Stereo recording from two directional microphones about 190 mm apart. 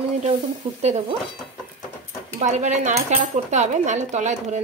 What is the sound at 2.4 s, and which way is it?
Speech, 40° right (ahead or behind).